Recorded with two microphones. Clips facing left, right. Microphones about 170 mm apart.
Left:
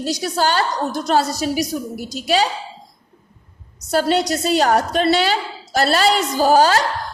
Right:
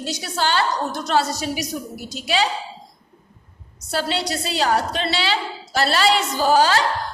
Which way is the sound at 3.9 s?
45° left (ahead or behind).